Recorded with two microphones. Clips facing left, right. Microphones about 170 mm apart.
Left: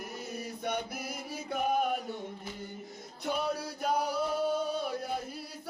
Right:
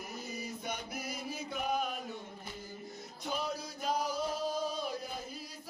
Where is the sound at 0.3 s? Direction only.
60° left (ahead or behind).